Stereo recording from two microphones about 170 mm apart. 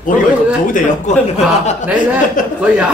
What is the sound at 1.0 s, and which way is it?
A man's voice, 45° left (ahead or behind).